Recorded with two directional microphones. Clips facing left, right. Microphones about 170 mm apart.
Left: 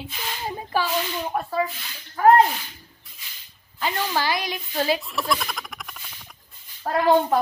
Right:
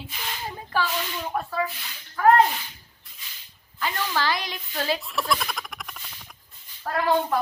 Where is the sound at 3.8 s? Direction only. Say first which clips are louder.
Left 2 dB; 20° left (ahead or behind).